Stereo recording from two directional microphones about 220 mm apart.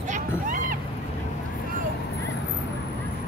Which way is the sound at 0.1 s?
35° right (ahead or behind).